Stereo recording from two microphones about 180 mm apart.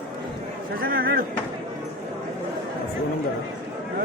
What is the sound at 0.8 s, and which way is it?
Speech, 55° right (ahead or behind).